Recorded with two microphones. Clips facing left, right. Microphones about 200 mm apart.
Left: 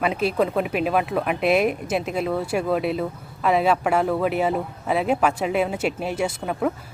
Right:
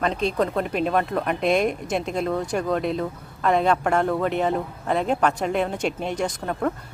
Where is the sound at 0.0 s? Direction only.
5° left (ahead or behind).